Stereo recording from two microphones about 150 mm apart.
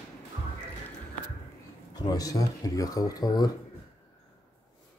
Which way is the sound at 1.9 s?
25° left (ahead or behind).